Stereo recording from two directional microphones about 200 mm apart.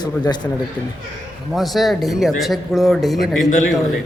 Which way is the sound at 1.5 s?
Centre (ahead or behind).